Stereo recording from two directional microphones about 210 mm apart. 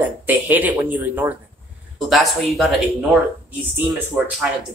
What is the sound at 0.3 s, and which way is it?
Speech, 10° right (ahead or behind).